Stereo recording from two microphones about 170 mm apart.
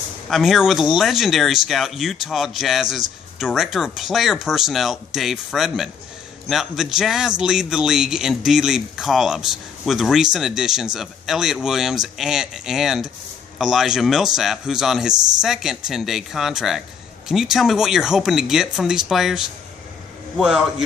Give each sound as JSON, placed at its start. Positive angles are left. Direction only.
{"t": 0.3, "sound": "speech", "side_deg": 0}